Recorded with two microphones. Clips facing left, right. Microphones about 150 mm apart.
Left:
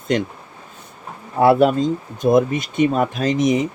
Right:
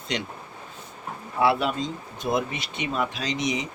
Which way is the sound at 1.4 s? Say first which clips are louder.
Left 9 dB; 50° left (ahead or behind).